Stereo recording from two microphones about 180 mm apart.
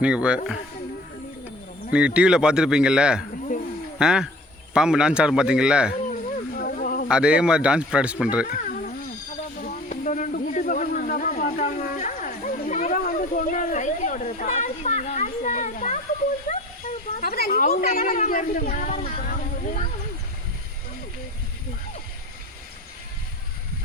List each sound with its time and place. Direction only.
0.0 s speech: 5° right (ahead or behind)
1.9 s speech: 5° right (ahead or behind)
6.1 s a sound: 50° left (ahead or behind)
7.1 s speech: 5° right (ahead or behind)
8.4 s a sound: 50° left (ahead or behind)
9.6 s snake: 50° left (ahead or behind)
16.5 s speech: 45° left (ahead or behind)